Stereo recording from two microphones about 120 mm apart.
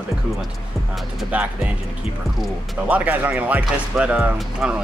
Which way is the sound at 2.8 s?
15° right (ahead or behind).